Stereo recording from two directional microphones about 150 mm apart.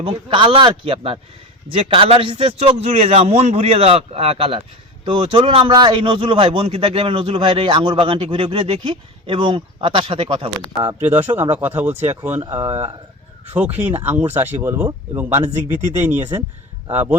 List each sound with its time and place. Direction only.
0.0 s a man's voice: 40° right (ahead or behind)
11.0 s speech: 10° right (ahead or behind)
12.5 s a man's voice: 35° right (ahead or behind)
13.5 s speech: 10° right (ahead or behind)